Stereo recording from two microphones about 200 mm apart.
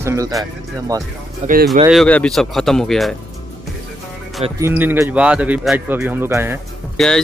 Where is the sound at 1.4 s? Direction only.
35° right (ahead or behind).